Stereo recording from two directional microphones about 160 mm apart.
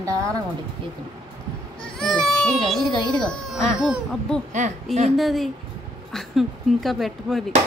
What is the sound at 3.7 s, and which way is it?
Speech, 5° right (ahead or behind).